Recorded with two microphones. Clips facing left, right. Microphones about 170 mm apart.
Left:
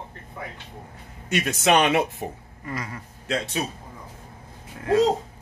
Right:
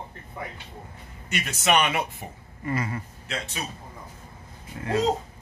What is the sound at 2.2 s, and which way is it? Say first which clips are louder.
Speech: left 8 dB; 45° left (ahead or behind).